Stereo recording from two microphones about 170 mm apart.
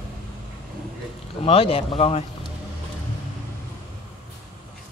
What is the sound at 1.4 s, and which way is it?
Speech, 35° left (ahead or behind).